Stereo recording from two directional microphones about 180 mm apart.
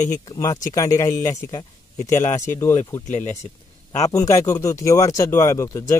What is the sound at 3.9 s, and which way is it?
Speech, 20° left (ahead or behind).